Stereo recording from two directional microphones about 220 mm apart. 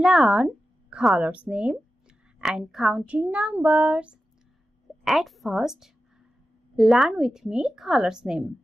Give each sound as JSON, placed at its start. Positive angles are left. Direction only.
{"t": 0.0, "sound": "a woman's voice", "side_deg": 0}